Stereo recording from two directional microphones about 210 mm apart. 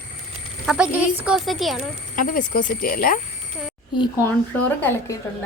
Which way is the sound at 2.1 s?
40° left (ahead or behind).